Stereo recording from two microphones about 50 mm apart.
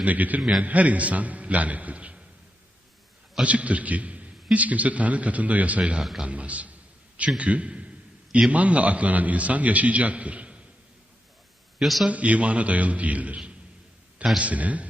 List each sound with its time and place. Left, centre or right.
0.0 s a man's voice: right
3.4 s a man's voice: right
11.8 s a man's voice: centre
12.0 s a man's voice: right